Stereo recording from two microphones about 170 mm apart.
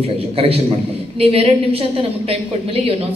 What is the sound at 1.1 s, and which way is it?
A woman's voice, 35° right (ahead or behind).